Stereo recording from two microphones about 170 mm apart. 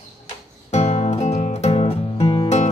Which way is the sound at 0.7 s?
40° left (ahead or behind).